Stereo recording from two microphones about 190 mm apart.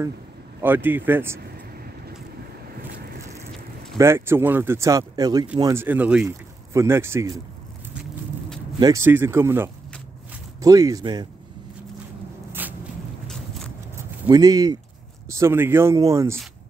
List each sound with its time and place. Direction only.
0.6 s speech: 10° right (ahead or behind)
4.0 s speech: 15° right (ahead or behind)
8.7 s speech: 20° right (ahead or behind)
14.3 s speech: 20° right (ahead or behind)